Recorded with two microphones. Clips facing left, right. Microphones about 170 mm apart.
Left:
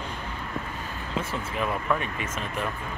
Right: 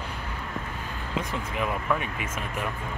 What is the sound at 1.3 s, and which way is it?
Speech, 15° right (ahead or behind).